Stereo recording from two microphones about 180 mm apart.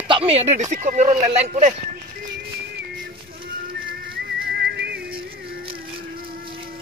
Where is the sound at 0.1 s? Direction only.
35° right (ahead or behind).